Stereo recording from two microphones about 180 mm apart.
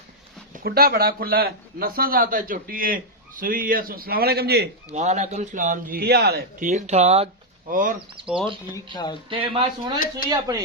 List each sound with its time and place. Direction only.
0.6 s a man's voice: 60° right (ahead or behind)
4.9 s a man's voice: 40° right (ahead or behind); by 6.7 s 60° right (ahead or behind)
6.7 s speech: 40° right (ahead or behind)
7.7 s a man's voice: 50° right (ahead or behind)
8.3 s speech: 5° right (ahead or behind)
8.7 s speech: 25° left (ahead or behind)
9.3 s speech: 30° right (ahead or behind)